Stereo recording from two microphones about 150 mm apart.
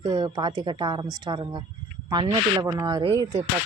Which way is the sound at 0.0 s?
30° right (ahead or behind).